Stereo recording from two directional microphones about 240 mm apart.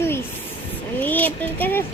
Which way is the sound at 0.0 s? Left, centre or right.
Centre.